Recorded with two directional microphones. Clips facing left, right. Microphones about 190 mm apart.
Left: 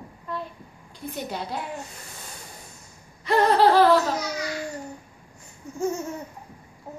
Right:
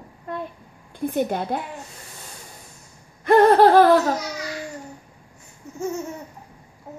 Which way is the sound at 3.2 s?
50° right (ahead or behind).